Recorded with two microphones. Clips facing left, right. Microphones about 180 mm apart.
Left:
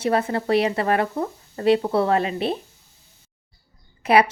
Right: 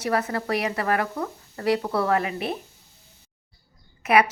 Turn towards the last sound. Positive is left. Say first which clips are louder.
# left 3 dB
turn(degrees=30)  # may be behind; listen again after turning